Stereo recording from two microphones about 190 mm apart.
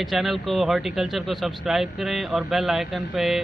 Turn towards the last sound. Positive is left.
turn(degrees=0)  # may be behind; listen again after turning